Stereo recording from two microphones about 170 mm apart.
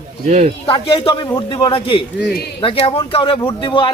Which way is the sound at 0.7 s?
30° left (ahead or behind).